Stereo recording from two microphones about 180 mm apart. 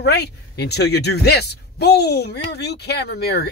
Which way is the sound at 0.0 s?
65° left (ahead or behind).